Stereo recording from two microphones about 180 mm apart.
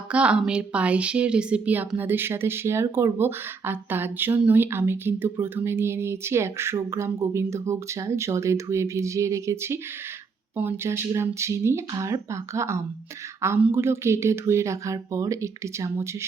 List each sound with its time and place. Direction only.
0.1 s speech: 5° right (ahead or behind)